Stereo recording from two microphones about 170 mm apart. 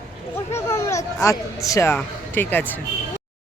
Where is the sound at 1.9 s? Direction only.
10° left (ahead or behind).